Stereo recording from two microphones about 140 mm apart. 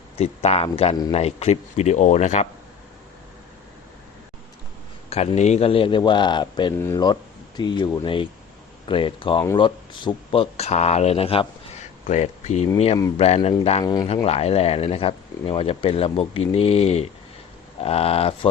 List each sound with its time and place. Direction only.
0.2 s speech: 45° left (ahead or behind)
5.0 s speech: 45° left (ahead or behind)
6.7 s speech: 20° left (ahead or behind)
7.0 s speech: 30° left (ahead or behind)
8.0 s speech: 40° left (ahead or behind)
12.0 s speech: 60° left (ahead or behind)
13.8 s speech: 25° left (ahead or behind)
14.1 s speech: 45° left (ahead or behind)